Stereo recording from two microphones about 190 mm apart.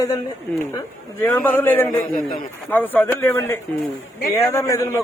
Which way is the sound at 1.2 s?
10° left (ahead or behind).